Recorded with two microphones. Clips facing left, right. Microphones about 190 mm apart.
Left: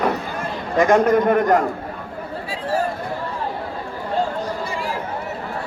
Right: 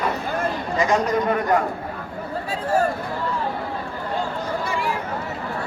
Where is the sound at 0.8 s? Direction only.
55° left (ahead or behind).